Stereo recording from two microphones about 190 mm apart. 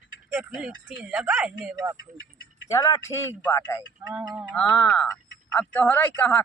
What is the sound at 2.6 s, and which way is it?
Speech, 15° left (ahead or behind).